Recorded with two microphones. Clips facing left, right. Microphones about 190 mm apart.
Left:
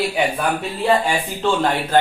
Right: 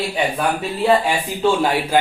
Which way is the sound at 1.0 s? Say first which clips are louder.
Right 2 dB; 10° right (ahead or behind).